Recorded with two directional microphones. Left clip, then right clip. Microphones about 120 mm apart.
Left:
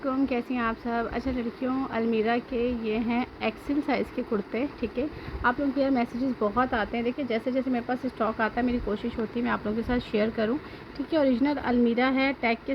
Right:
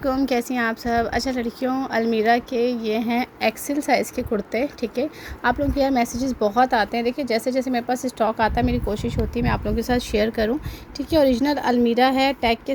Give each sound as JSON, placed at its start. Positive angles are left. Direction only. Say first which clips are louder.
{"t": 0.3, "sound": "a woman's voice", "louder": "right 6 dB", "side_deg": -60}